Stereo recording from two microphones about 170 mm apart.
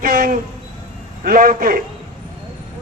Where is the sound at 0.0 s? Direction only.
55° right (ahead or behind).